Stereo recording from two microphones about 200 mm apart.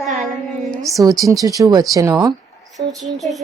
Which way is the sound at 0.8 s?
15° right (ahead or behind).